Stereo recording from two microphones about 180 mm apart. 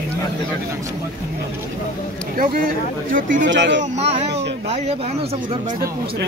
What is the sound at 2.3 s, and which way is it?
Speech, 50° right (ahead or behind).